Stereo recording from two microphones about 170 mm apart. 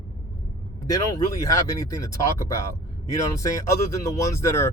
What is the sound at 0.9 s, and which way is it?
Speech, 20° left (ahead or behind).